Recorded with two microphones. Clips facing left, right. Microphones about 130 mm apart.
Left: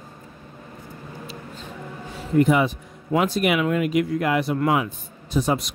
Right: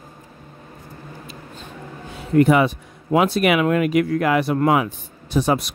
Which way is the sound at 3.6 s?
60° right (ahead or behind).